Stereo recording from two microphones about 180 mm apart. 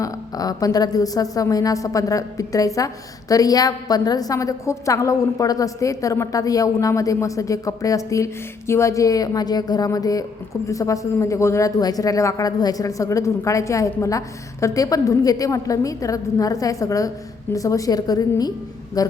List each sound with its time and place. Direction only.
0.0 s a woman's voice: 20° left (ahead or behind)